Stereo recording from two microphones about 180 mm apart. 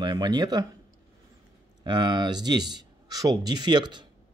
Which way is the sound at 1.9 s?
25° right (ahead or behind).